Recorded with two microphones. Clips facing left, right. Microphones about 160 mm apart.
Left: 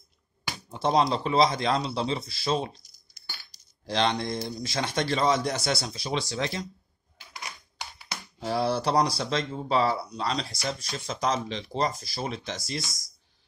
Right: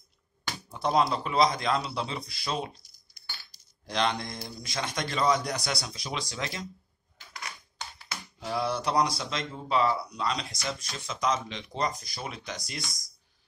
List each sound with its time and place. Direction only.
0.7 s speech: 25° left (ahead or behind)
3.8 s speech: 30° left (ahead or behind)
8.4 s speech: 30° left (ahead or behind)